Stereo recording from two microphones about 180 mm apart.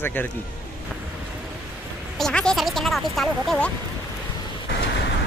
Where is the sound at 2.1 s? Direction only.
5° left (ahead or behind).